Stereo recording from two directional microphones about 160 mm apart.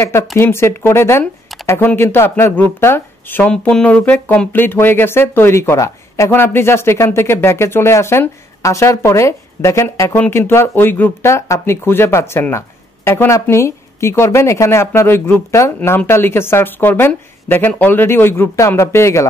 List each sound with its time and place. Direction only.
0.4 s speech: 15° left (ahead or behind)